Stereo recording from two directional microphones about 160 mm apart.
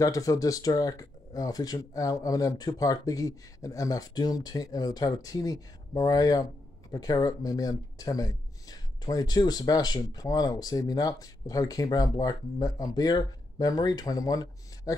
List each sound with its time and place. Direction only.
0.0 s speech: 20° left (ahead or behind)